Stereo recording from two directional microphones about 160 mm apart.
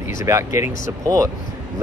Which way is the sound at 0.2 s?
15° right (ahead or behind).